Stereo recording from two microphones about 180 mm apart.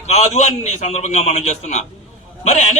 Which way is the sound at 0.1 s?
40° left (ahead or behind).